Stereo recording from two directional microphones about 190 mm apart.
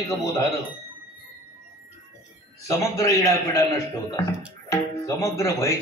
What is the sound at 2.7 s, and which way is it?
Speech, 15° left (ahead or behind).